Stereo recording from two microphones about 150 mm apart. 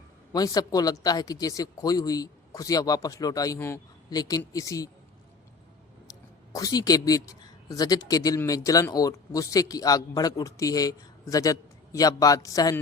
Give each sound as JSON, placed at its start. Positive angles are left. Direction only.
{"t": 0.3, "sound": "speech", "side_deg": 25}
{"t": 6.5, "sound": "speech", "side_deg": 25}